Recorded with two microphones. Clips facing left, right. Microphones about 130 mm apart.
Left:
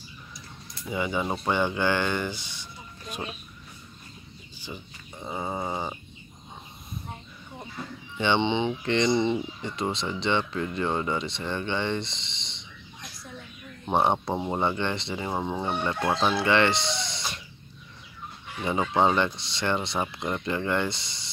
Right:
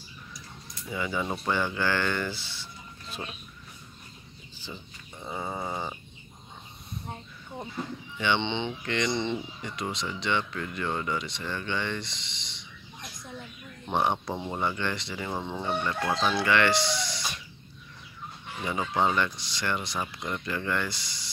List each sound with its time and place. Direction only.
0.9 s speech: 20° left (ahead or behind)
5.2 s a sound: 15° left (ahead or behind)
8.4 s speech: 15° left (ahead or behind)
8.8 s speech: 25° left (ahead or behind)
9.1 s speech: 10° left (ahead or behind)
9.6 s speech: 25° left (ahead or behind)
13.8 s speech: 30° left (ahead or behind)
15.4 s speech: 15° left (ahead or behind)
15.8 s speech: 25° left (ahead or behind)
18.7 s speech: 25° left (ahead or behind)